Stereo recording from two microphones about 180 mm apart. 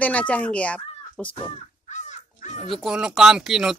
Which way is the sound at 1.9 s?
40° left (ahead or behind).